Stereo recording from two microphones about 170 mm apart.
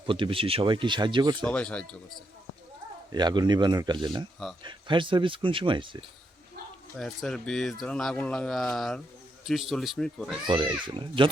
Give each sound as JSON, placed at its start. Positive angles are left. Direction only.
{"t": 0.0, "sound": "speech", "side_deg": -30}
{"t": 1.5, "sound": "speech", "side_deg": 5}
{"t": 3.1, "sound": "speech", "side_deg": -25}
{"t": 7.0, "sound": "speech", "side_deg": 0}
{"t": 10.4, "sound": "speech", "side_deg": -30}